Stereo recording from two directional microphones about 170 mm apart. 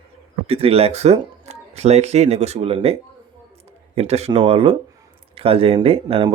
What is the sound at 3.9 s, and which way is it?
Speech, 40° right (ahead or behind).